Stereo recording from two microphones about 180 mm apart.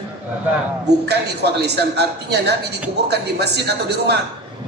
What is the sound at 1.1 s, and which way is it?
Speech, 65° right (ahead or behind).